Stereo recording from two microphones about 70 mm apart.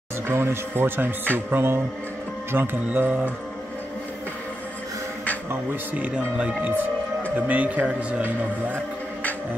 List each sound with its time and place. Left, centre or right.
0.3 s speech: right
5.9 s speech: right